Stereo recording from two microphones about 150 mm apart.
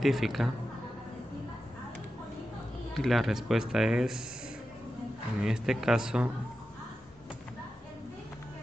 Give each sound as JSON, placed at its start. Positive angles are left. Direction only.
{"t": 0.0, "sound": "speech", "side_deg": 0}
{"t": 2.9, "sound": "speech", "side_deg": 0}
{"t": 5.4, "sound": "speech", "side_deg": -5}